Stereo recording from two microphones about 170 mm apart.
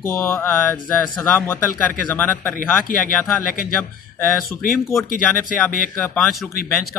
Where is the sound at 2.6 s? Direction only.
55° left (ahead or behind).